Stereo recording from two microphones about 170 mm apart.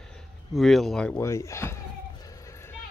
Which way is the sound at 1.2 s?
15° left (ahead or behind).